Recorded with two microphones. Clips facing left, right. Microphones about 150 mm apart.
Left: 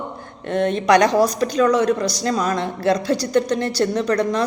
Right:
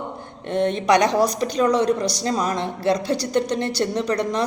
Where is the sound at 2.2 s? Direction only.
20° right (ahead or behind).